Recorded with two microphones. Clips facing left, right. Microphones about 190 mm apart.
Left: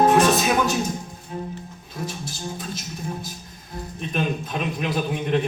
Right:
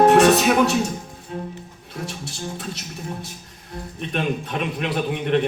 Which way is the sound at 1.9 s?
70° right (ahead or behind).